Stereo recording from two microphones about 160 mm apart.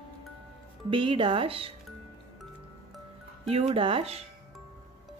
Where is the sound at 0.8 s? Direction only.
30° right (ahead or behind).